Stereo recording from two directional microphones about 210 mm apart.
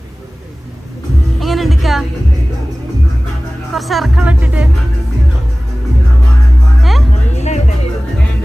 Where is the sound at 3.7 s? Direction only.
Centre (ahead or behind).